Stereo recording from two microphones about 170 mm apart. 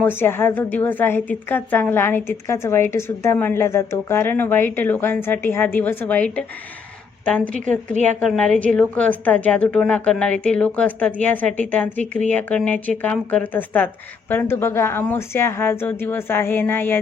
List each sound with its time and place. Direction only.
0.0 s a woman's voice: 15° left (ahead or behind)